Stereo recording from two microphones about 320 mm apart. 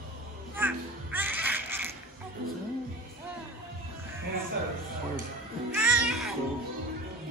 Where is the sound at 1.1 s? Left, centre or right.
Centre.